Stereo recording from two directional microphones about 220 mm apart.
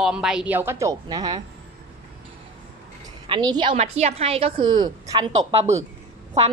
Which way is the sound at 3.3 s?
20° right (ahead or behind).